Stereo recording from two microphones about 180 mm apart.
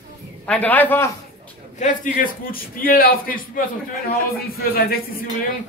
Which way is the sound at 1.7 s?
45° left (ahead or behind).